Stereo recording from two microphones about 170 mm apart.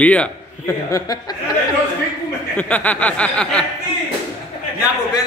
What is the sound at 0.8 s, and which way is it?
Speech, 20° left (ahead or behind).